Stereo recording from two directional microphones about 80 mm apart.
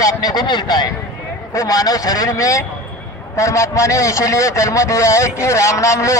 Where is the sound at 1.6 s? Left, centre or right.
Left.